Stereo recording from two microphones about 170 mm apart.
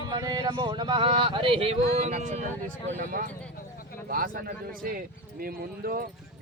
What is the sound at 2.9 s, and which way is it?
Speech, 55° right (ahead or behind).